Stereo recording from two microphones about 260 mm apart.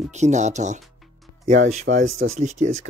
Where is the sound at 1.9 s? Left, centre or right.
Right.